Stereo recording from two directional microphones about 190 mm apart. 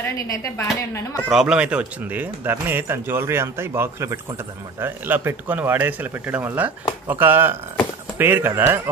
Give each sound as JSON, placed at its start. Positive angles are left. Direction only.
{"t": 0.0, "sound": "speech", "side_deg": 15}
{"t": 1.3, "sound": "speech", "side_deg": -5}